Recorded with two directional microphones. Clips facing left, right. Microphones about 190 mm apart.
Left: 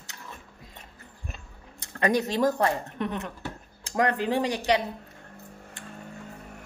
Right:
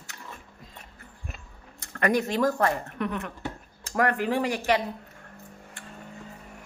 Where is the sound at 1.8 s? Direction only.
20° left (ahead or behind).